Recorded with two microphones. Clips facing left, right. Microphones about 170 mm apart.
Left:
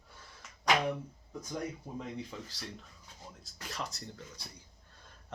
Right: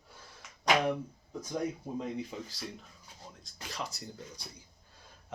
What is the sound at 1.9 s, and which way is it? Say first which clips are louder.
Speech: right 4 dB; 10° right (ahead or behind).